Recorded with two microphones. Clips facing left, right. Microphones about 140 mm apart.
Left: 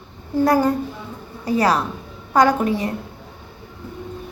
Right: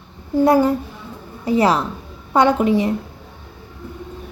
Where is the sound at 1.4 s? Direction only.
25° right (ahead or behind).